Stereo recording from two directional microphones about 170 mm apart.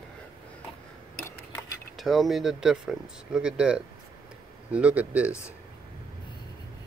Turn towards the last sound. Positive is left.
turn(degrees=-10)  # may be behind; listen again after turning